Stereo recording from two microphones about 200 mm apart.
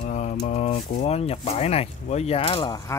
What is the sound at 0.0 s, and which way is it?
Mantra, 35° left (ahead or behind).